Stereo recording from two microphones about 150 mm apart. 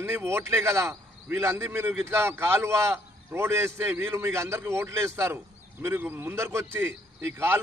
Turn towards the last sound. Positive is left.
turn(degrees=-15)  # may be behind; listen again after turning